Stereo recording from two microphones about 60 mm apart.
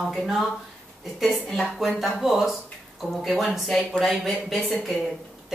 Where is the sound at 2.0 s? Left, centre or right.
Centre.